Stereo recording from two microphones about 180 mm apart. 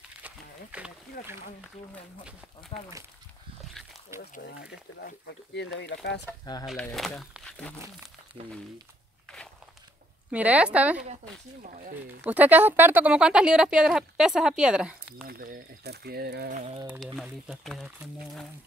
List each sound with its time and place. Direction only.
0.2 s a sound: 5° right (ahead or behind)
1.2 s speech: 55° left (ahead or behind)
4.4 s speech: 65° left (ahead or behind)
6.6 s speech: centre (ahead or behind)
10.3 s speech: 10° right (ahead or behind)
11.6 s speech: 45° right (ahead or behind)
12.2 s speech: 10° right (ahead or behind)
15.2 s speech: 55° right (ahead or behind)
16.5 s speech: 30° right (ahead or behind)
17.0 s speech: centre (ahead or behind)